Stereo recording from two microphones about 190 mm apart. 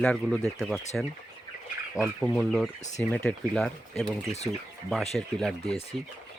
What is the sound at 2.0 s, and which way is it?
Speech, 5° left (ahead or behind).